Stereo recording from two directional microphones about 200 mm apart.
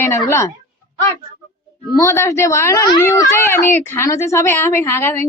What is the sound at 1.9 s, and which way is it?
A child's voice, 15° left (ahead or behind).